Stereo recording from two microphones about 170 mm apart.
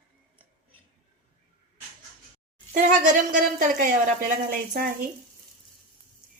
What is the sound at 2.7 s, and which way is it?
A woman's voice, 50° right (ahead or behind).